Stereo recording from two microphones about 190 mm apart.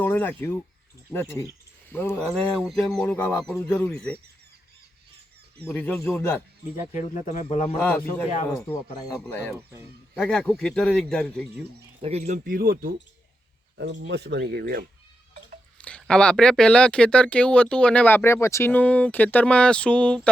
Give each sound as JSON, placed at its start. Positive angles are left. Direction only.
{"t": 0.0, "sound": "speech", "side_deg": 10}
{"t": 5.5, "sound": "speech", "side_deg": 10}
{"t": 6.9, "sound": "speech", "side_deg": 35}
{"t": 7.8, "sound": "speech", "side_deg": 10}
{"t": 9.6, "sound": "speech", "side_deg": -10}
{"t": 10.2, "sound": "speech", "side_deg": 5}
{"t": 12.0, "sound": "speech", "side_deg": -35}
{"t": 15.8, "sound": "speech", "side_deg": 5}